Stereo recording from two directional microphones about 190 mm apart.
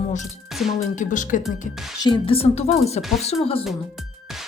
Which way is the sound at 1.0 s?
40° left (ahead or behind).